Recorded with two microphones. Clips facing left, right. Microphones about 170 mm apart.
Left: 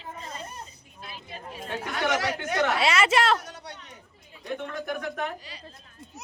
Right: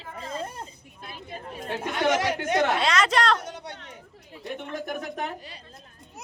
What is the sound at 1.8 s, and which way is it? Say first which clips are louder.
Speech: right 3 dB; 20° right (ahead or behind).